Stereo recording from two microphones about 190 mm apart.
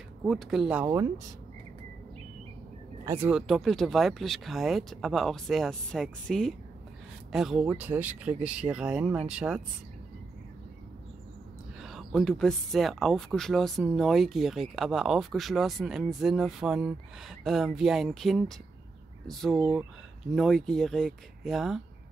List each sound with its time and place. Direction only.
0.3 s speech: centre (ahead or behind)
0.8 s speech: 15° right (ahead or behind)
3.1 s speech: 10° right (ahead or behind)
11.8 s speech: centre (ahead or behind)